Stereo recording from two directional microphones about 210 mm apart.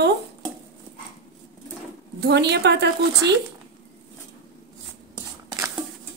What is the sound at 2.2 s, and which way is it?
Speech, 55° right (ahead or behind).